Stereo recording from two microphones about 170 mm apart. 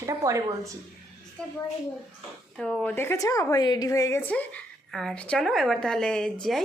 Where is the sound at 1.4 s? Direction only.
5° left (ahead or behind).